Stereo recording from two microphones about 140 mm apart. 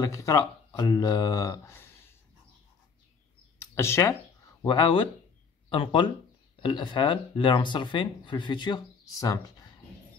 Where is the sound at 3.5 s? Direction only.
20° left (ahead or behind).